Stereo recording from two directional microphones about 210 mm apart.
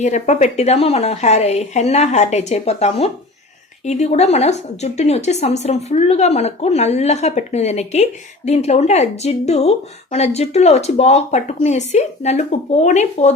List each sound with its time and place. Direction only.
0.0 s speech: 35° left (ahead or behind)